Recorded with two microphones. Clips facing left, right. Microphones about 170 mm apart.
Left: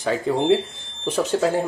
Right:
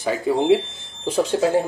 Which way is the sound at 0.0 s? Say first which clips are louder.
Right 1 dB; 10° right (ahead or behind).